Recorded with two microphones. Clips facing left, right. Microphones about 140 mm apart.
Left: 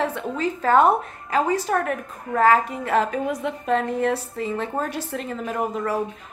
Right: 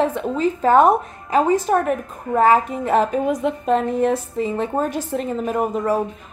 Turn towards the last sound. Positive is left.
turn(degrees=-15)  # may be behind; listen again after turning